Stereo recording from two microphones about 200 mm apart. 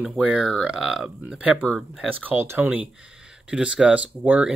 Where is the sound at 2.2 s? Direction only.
10° right (ahead or behind).